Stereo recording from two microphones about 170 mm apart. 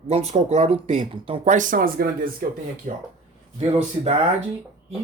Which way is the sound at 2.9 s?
50° right (ahead or behind).